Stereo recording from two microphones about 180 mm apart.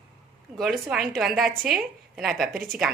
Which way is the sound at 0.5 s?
Centre (ahead or behind).